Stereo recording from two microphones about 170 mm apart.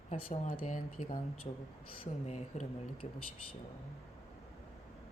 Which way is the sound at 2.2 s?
40° left (ahead or behind).